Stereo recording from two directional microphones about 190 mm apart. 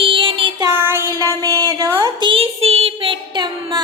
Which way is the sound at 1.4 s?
20° right (ahead or behind).